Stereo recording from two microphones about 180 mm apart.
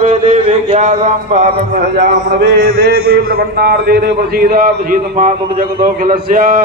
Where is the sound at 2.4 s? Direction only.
55° right (ahead or behind).